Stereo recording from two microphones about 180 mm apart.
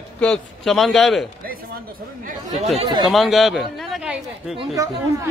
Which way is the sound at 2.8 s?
25° right (ahead or behind).